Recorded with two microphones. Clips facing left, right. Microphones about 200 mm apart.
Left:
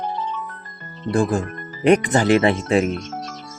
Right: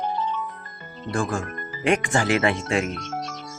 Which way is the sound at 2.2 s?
25° left (ahead or behind).